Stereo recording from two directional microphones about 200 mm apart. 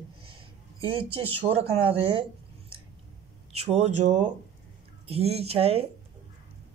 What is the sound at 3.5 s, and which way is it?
Speech, 30° right (ahead or behind).